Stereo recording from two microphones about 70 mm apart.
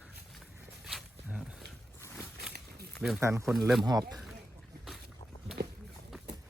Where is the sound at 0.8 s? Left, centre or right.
Centre.